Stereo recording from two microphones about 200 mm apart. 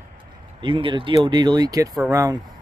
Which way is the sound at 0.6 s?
25° right (ahead or behind).